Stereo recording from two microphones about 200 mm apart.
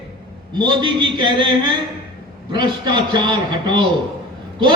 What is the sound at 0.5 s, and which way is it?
A man's voice, 20° right (ahead or behind).